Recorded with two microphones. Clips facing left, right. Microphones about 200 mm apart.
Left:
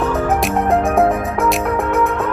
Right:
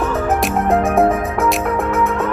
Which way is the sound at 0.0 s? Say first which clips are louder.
Left 1 dB; centre (ahead or behind).